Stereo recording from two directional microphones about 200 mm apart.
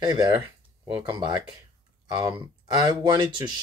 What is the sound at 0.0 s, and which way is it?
Speech, 20° right (ahead or behind).